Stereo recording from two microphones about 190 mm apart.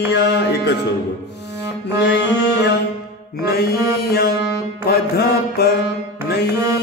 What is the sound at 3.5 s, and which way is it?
Music, 55° left (ahead or behind).